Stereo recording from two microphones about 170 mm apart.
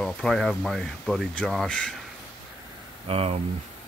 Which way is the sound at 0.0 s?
5° left (ahead or behind).